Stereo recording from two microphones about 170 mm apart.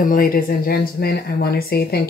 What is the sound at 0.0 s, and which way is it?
Speech, 55° left (ahead or behind).